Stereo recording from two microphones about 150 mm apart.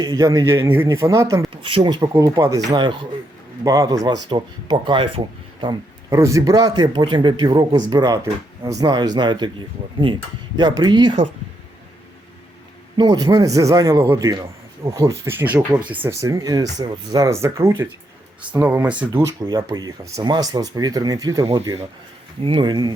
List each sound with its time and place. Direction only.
0.0 s a man's voice: 25° right (ahead or behind)
1.6 s a man's voice: 30° right (ahead or behind)
6.1 s a man's voice: 20° right (ahead or behind)
10.6 s a man's voice: 30° right (ahead or behind)
13.0 s a man's voice: 25° right (ahead or behind); by 19.2 s 10° right (ahead or behind)
19.2 s a man's voice: 20° right (ahead or behind)